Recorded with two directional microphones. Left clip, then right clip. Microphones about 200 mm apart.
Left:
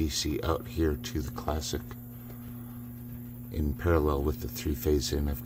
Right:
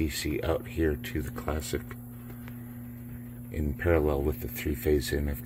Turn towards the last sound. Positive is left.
turn(degrees=10)  # may be behind; listen again after turning